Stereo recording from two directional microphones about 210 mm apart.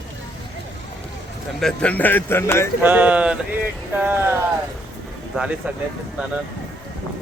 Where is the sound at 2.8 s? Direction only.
10° right (ahead or behind).